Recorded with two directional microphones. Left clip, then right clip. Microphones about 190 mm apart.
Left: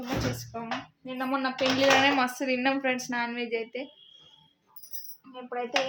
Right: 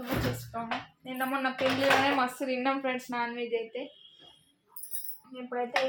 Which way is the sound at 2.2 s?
20° left (ahead or behind).